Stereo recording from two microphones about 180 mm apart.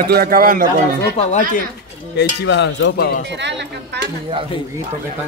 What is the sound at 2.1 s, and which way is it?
Speech, 70° left (ahead or behind).